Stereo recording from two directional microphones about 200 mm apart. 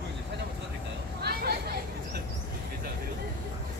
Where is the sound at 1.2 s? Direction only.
50° right (ahead or behind).